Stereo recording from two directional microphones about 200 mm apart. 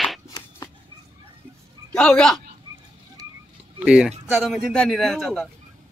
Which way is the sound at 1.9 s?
5° left (ahead or behind).